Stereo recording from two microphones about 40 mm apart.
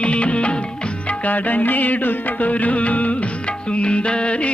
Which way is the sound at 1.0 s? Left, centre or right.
Left.